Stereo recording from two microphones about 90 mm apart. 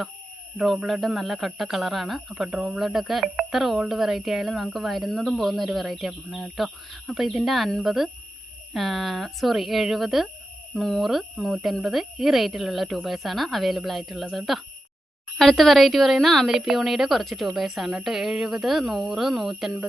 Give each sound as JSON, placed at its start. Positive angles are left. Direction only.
{"t": 0.5, "sound": "speech", "side_deg": 0}